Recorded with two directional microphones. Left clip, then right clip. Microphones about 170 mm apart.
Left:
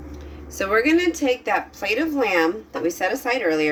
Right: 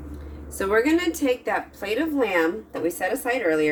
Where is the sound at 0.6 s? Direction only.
25° right (ahead or behind).